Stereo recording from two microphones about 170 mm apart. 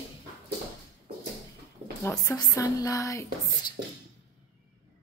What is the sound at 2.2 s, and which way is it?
Speech, 20° left (ahead or behind).